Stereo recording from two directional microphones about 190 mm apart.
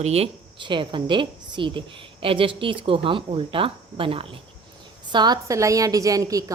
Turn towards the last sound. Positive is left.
turn(degrees=-20)  # may be behind; listen again after turning